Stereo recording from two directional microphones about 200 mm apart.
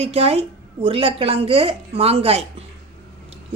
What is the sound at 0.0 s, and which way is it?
Speech, 30° right (ahead or behind).